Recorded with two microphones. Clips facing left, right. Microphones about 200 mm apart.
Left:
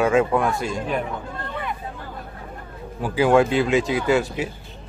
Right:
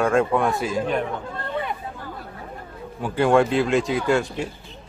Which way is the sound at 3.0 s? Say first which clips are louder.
Left 1 dB; centre (ahead or behind).